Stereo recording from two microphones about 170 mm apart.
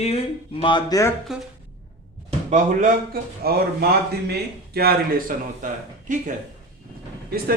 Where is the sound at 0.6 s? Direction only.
25° left (ahead or behind).